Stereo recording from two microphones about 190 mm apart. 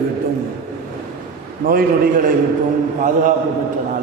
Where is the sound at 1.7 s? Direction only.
50° right (ahead or behind).